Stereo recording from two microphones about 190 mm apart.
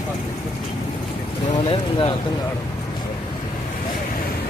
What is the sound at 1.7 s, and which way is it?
Vehicle, 30° left (ahead or behind).